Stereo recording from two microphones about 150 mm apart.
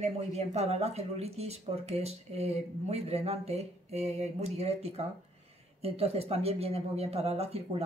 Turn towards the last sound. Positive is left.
turn(degrees=-40)  # may be behind; listen again after turning